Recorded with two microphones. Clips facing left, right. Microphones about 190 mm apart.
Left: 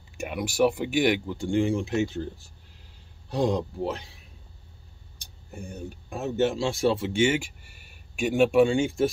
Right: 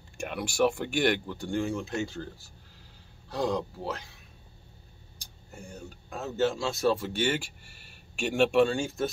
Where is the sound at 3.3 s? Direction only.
25° left (ahead or behind).